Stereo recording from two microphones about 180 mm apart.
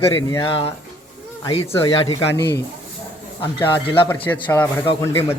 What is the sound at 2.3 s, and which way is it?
Speech, 70° left (ahead or behind).